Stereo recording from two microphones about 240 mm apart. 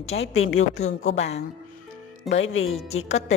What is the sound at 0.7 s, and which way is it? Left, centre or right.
Speech, left.